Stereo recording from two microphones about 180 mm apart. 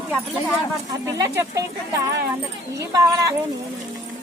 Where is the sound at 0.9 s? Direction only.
20° right (ahead or behind).